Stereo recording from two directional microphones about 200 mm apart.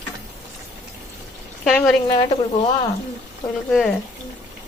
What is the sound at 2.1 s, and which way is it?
Speech, 25° left (ahead or behind).